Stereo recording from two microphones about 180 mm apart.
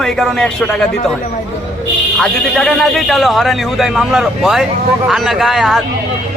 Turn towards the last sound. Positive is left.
turn(degrees=0)  # may be behind; listen again after turning